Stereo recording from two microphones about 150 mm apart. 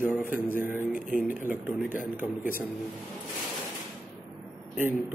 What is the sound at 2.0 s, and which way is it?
Speech, 65° left (ahead or behind).